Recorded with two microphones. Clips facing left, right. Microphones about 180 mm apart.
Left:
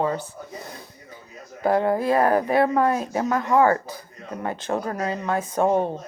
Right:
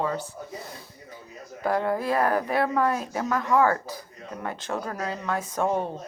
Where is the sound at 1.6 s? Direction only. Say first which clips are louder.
Left 5 dB; 20° left (ahead or behind).